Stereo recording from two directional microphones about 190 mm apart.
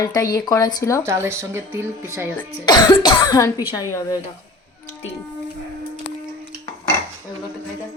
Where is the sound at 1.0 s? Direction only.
15° right (ahead or behind).